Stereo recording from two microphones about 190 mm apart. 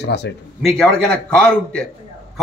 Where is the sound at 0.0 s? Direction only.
60° left (ahead or behind).